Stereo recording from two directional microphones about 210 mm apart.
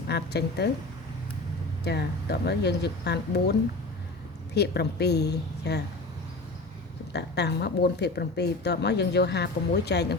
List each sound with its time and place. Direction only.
0.1 s speech: 50° left (ahead or behind)
1.8 s speech: 50° left (ahead or behind)
4.5 s speech: 50° left (ahead or behind)
7.1 s speech: 55° left (ahead or behind)